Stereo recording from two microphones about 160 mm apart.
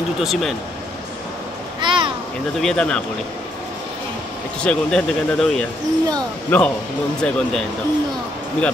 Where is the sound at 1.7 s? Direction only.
30° right (ahead or behind).